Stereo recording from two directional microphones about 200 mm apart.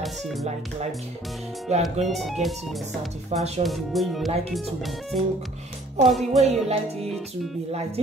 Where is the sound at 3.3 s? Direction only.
35° right (ahead or behind).